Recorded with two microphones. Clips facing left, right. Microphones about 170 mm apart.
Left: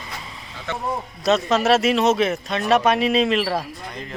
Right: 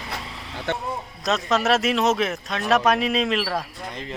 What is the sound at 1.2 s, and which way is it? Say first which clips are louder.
Speech: left 4 dB; centre (ahead or behind).